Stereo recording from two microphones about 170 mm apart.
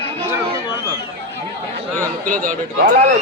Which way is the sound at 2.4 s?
50° right (ahead or behind).